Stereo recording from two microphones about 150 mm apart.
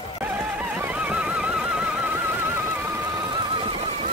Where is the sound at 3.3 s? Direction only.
30° right (ahead or behind).